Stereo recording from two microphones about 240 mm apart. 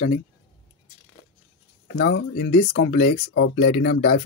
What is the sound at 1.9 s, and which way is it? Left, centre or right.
Speech, left.